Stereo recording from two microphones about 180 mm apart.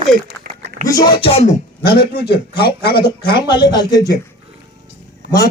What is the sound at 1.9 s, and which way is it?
A man's voice, 60° left (ahead or behind).